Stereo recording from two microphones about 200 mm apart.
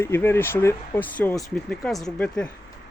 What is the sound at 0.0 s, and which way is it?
Speech, 10° left (ahead or behind).